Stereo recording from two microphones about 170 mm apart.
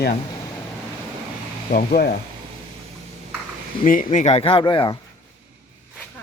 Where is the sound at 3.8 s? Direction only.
50° left (ahead or behind); by 4.9 s 30° left (ahead or behind).